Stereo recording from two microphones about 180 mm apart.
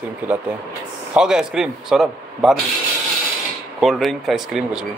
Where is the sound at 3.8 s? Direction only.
Centre (ahead or behind).